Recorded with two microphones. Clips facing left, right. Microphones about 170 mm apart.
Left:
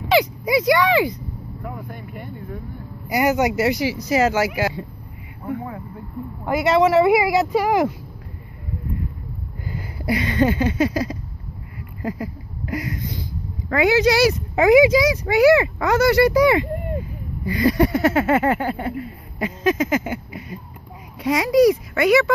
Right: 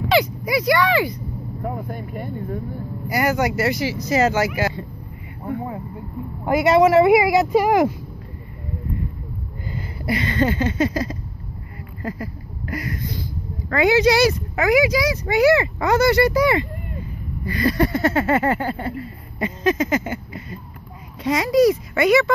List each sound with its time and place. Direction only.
0.1 s speech: 20° left (ahead or behind)
1.6 s speech: 35° right (ahead or behind)
3.1 s a sound: 15° left (ahead or behind)
4.6 s speech: 10° left (ahead or behind)
6.4 s speech: 10° right (ahead or behind)
9.7 s a sound: 10° left (ahead or behind)
13.7 s speech: 5° left (ahead or behind)
14.5 s speech: 25° left (ahead or behind)
15.2 s a sound: 10° left (ahead or behind)
21.9 s speech: 5° left (ahead or behind)